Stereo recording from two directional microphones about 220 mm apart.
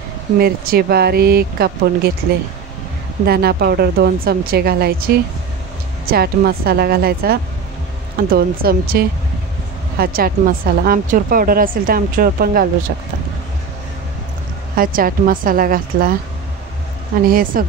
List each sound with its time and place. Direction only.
0.4 s speech: 45° right (ahead or behind)
3.3 s speech: 45° right (ahead or behind)
14.8 s speech: 40° right (ahead or behind)
17.3 s speech: 40° right (ahead or behind)